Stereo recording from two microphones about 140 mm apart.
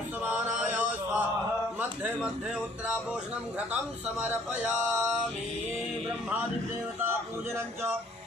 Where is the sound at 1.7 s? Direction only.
10° right (ahead or behind).